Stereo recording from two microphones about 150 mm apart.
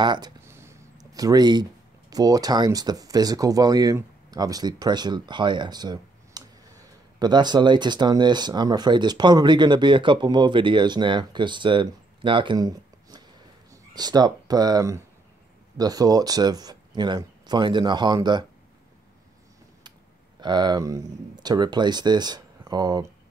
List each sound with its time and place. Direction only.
0.0 s speech: 30° right (ahead or behind)
0.5 s speech: 15° right (ahead or behind)
20.3 s speech: 30° right (ahead or behind)